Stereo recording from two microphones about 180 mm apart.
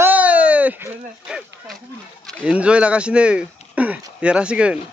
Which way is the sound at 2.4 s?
5° right (ahead or behind).